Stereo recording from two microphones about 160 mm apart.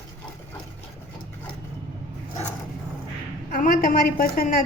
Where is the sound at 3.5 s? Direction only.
60° left (ahead or behind).